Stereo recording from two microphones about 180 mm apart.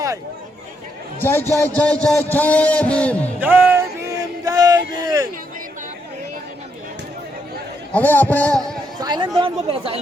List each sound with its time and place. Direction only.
1.2 s a man's voice: 10° left (ahead or behind)
3.4 s a sound: 10° right (ahead or behind)
4.9 s speech: 20° right (ahead or behind)
7.9 s a man's voice: 10° left (ahead or behind)
9.0 s speech: 25° right (ahead or behind)